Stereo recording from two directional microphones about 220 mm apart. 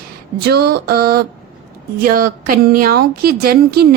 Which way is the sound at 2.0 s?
40° right (ahead or behind).